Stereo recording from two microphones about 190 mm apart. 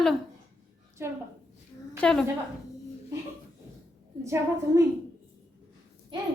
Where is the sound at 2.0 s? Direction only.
5° left (ahead or behind).